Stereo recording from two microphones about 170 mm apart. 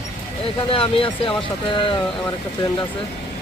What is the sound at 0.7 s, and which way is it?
Speech, 30° left (ahead or behind).